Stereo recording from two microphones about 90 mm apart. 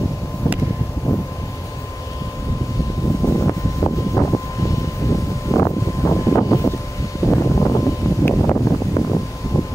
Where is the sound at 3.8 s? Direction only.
35° left (ahead or behind).